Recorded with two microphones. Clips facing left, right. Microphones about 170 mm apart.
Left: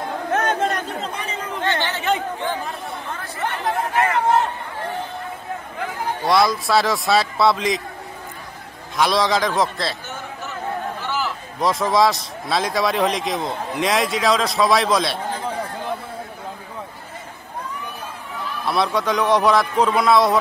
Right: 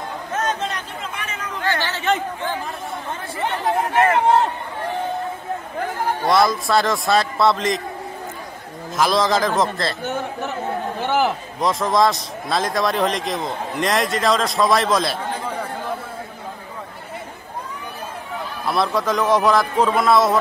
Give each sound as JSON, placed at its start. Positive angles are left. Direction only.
{"t": 0.3, "sound": "chatter", "side_deg": 60}
{"t": 1.0, "sound": "chatter", "side_deg": 30}
{"t": 3.3, "sound": "chatter", "side_deg": -20}
{"t": 6.2, "sound": "a man's voice", "side_deg": 0}
{"t": 8.9, "sound": "a man's voice", "side_deg": 0}
{"t": 10.0, "sound": "chatter", "side_deg": -60}
{"t": 11.0, "sound": "a sound", "side_deg": -55}
{"t": 11.6, "sound": "a man's voice", "side_deg": 0}
{"t": 18.7, "sound": "a man's voice", "side_deg": 0}